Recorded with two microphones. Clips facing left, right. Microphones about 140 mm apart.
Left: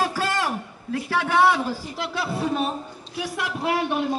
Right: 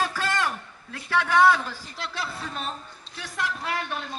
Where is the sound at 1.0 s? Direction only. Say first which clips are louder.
Even; 10° left (ahead or behind).